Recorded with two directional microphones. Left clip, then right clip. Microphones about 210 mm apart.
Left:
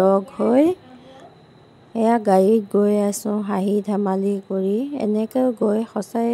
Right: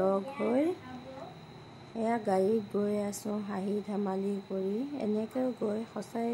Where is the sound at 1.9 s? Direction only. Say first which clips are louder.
Left 13 dB; 40° left (ahead or behind).